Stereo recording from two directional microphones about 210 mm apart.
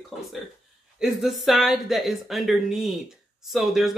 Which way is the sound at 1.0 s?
Centre (ahead or behind).